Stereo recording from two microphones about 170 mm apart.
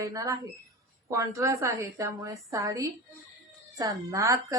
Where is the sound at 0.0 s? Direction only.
20° right (ahead or behind).